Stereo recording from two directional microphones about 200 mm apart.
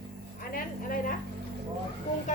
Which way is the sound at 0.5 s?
45° left (ahead or behind).